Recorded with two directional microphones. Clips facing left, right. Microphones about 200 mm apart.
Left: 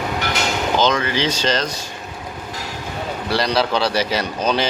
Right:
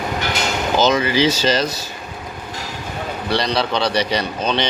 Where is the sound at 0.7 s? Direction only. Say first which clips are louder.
Right 3 dB; 10° right (ahead or behind).